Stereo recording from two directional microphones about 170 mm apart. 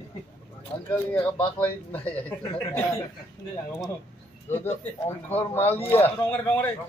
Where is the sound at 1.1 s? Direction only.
10° left (ahead or behind).